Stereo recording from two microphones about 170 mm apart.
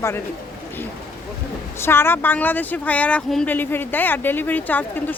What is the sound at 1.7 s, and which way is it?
Speech, 15° left (ahead or behind).